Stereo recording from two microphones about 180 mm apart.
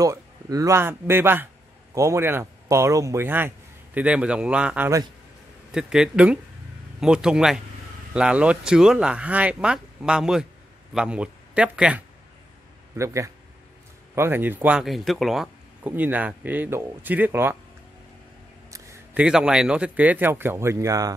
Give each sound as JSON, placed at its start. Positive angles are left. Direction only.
{"t": 0.0, "sound": "speech", "side_deg": -20}
{"t": 12.9, "sound": "speech", "side_deg": -15}
{"t": 18.7, "sound": "a sound", "side_deg": -15}
{"t": 19.2, "sound": "speech", "side_deg": -5}